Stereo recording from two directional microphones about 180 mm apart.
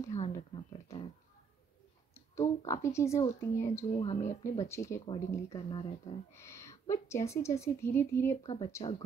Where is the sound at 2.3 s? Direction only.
15° left (ahead or behind).